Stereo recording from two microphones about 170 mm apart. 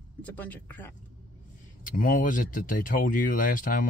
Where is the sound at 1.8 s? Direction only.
55° left (ahead or behind).